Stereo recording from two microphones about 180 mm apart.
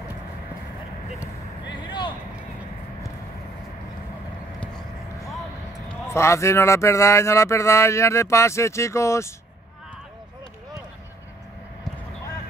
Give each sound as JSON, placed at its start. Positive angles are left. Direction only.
{"t": 1.8, "sound": "vehicle", "side_deg": 25}
{"t": 5.9, "sound": "speech", "side_deg": 15}